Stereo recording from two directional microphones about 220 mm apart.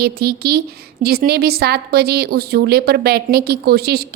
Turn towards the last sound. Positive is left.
turn(degrees=-45)  # may be behind; listen again after turning